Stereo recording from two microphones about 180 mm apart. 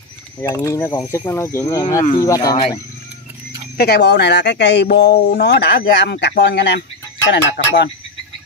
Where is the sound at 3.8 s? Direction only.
65° left (ahead or behind).